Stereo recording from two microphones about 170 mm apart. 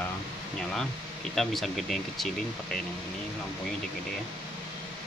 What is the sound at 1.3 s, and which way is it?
Speech, centre (ahead or behind).